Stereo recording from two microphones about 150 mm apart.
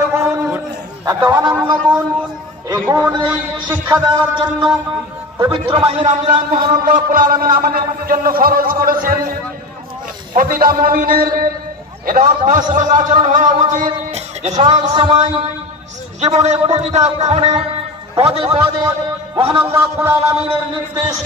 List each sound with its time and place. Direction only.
0.1 s a sound: 15° right (ahead or behind)
1.0 s a man's voice: 25° right (ahead or behind)
16.2 s a man's voice: 45° right (ahead or behind)
19.6 s a man's voice: 15° right (ahead or behind)
20.4 s a man's voice: 30° right (ahead or behind)